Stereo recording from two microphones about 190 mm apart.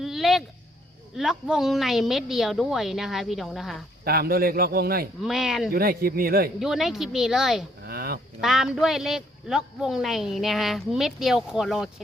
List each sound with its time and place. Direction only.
0.0 s a sound: centre (ahead or behind)
1.1 s speech: centre (ahead or behind)
4.0 s a man's voice: 55° right (ahead or behind)
5.2 s speech: 5° right (ahead or behind)
5.7 s a man's voice: 50° right (ahead or behind)
6.6 s speech: centre (ahead or behind)
7.9 s a sound: 55° right (ahead or behind)
8.4 s speech: centre (ahead or behind)